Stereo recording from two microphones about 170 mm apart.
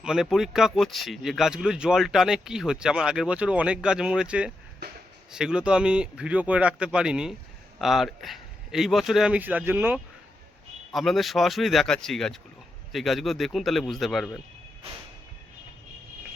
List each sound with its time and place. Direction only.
0.0 s speech: centre (ahead or behind)
10.9 s speech: centre (ahead or behind)